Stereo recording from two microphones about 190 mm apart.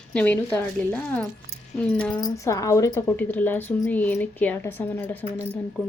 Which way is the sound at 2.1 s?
20° left (ahead or behind).